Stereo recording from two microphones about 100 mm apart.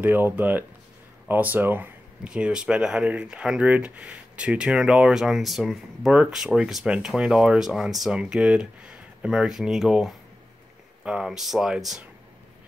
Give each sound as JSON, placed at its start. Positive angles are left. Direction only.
{"t": 0.0, "sound": "speech", "side_deg": -20}
{"t": 2.2, "sound": "speech", "side_deg": -10}